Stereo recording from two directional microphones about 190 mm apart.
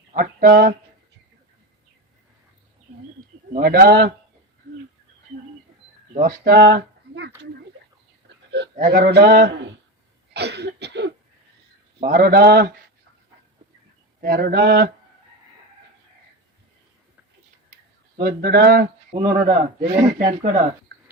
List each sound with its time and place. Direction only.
0.1 s speech: 45° right (ahead or behind)
3.2 s a man's voice: 50° right (ahead or behind)
6.1 s speech: 50° right (ahead or behind)
8.4 s a sound: 65° right (ahead or behind)
8.7 s speech: 40° right (ahead or behind)
9.0 s speech: 60° right (ahead or behind)
10.3 s cough: 60° right (ahead or behind)
12.0 s a man's voice: 50° right (ahead or behind)
14.2 s speech: 55° right (ahead or behind)
18.2 s speech: 55° right (ahead or behind)
19.5 s a man's voice: 35° right (ahead or behind)